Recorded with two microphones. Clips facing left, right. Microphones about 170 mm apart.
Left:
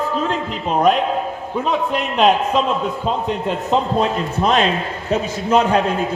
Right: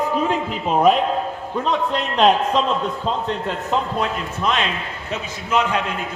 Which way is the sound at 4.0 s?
35° left (ahead or behind).